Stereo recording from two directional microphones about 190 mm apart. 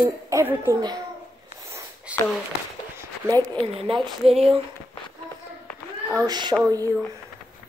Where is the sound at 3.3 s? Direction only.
10° left (ahead or behind).